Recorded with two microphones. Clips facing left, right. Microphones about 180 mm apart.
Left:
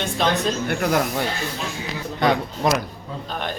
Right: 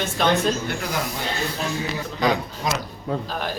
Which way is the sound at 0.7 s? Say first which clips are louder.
Left 6 dB; 55° left (ahead or behind).